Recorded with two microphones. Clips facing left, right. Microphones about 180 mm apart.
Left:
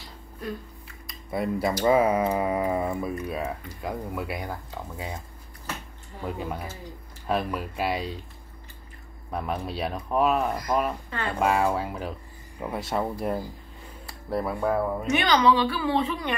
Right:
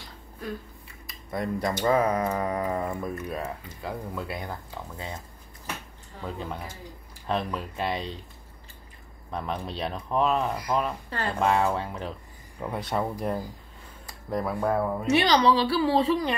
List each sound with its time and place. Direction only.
0.0 s a sound: centre (ahead or behind)
1.9 s speech: 10° left (ahead or behind)
6.2 s speech: 10° left (ahead or behind)
9.3 s speech: 10° left (ahead or behind)
14.3 s speech: centre (ahead or behind)
15.0 s a woman's voice: 35° right (ahead or behind)